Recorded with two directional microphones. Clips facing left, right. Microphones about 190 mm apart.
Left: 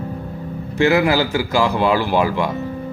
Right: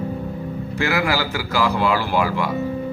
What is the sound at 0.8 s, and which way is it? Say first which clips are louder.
Speech: left 6 dB; 20° left (ahead or behind).